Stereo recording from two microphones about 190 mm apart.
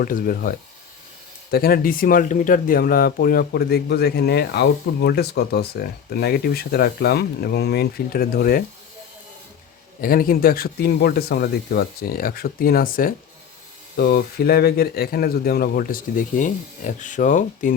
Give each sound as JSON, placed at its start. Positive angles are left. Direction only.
{"t": 0.0, "sound": "speech", "side_deg": 45}
{"t": 10.0, "sound": "speech", "side_deg": 50}
{"t": 13.9, "sound": "speech", "side_deg": 60}